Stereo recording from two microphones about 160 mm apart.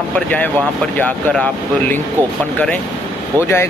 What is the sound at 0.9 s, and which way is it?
Speech, 10° left (ahead or behind).